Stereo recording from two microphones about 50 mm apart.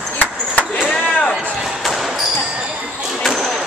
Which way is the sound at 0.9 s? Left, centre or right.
Centre.